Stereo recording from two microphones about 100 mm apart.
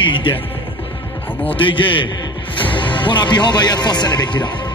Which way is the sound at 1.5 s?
55° left (ahead or behind).